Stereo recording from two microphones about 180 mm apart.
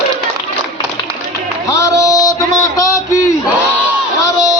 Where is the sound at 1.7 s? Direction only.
20° left (ahead or behind).